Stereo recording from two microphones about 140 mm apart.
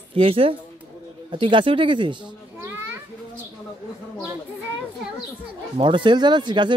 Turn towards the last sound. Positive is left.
turn(degrees=-35)  # may be behind; listen again after turning